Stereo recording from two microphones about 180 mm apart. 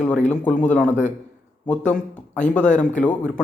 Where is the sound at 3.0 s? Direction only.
5° left (ahead or behind).